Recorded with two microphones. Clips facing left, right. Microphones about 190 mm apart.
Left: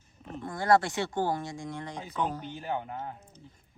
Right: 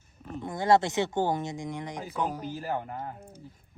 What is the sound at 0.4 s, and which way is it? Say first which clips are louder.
Speech: right 1 dB; 20° right (ahead or behind).